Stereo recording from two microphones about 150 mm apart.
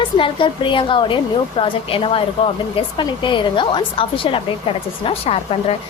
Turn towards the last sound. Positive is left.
turn(degrees=40)  # may be behind; listen again after turning